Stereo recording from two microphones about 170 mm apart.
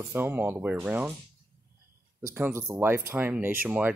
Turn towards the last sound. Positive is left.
turn(degrees=-10)  # may be behind; listen again after turning